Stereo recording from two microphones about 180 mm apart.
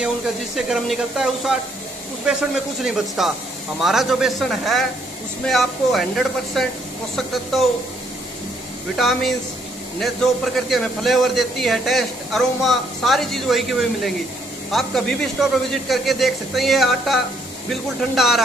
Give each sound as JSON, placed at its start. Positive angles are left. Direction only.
{"t": 0.6, "sound": "a man's voice", "side_deg": 0}
{"t": 8.9, "sound": "a man's voice", "side_deg": 0}